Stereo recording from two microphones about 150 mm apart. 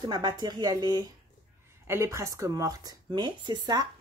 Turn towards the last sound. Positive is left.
turn(degrees=-30)  # may be behind; listen again after turning